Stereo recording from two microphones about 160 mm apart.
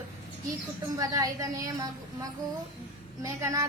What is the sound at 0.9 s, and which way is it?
A woman's voice, 20° right (ahead or behind).